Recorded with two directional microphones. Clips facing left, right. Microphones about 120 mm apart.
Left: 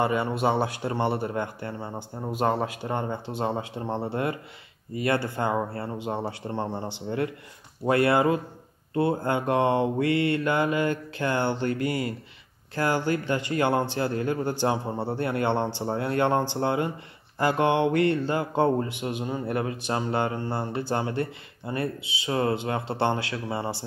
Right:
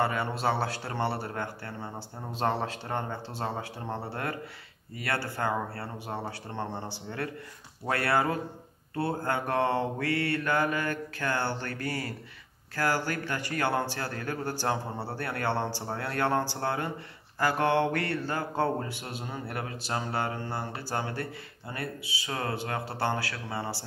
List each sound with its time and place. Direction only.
0.0 s speech: 20° left (ahead or behind)